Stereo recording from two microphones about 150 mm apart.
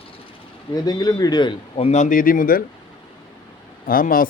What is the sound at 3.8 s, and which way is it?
Speech, 70° left (ahead or behind).